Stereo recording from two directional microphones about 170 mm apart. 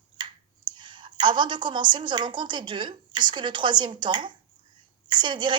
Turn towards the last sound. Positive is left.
turn(degrees=-25)  # may be behind; listen again after turning